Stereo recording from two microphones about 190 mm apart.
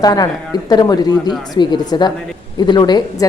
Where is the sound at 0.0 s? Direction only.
20° left (ahead or behind).